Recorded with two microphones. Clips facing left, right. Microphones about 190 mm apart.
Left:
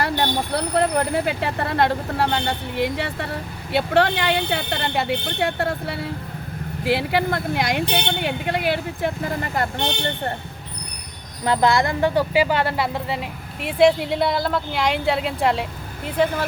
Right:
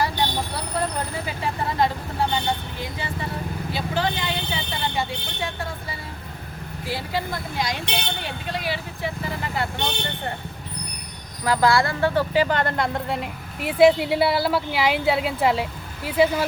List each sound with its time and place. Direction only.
0.0 s speech: 60° left (ahead or behind)
11.4 s speech: 25° left (ahead or behind); by 16.4 s 10° right (ahead or behind)